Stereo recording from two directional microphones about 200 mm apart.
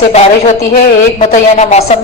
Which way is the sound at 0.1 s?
35° left (ahead or behind).